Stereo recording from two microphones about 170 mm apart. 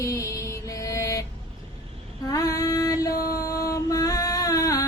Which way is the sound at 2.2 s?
20° left (ahead or behind).